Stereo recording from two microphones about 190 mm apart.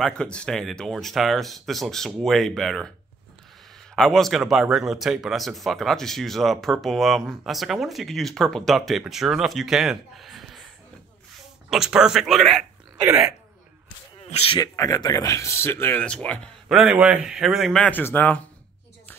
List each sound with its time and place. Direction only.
0.0 s speech: 5° left (ahead or behind)
3.9 s speech: centre (ahead or behind)
11.7 s speech: 5° right (ahead or behind)
14.2 s speech: 30° left (ahead or behind)
14.6 s speech: 20° left (ahead or behind)
16.6 s speech: 5° right (ahead or behind)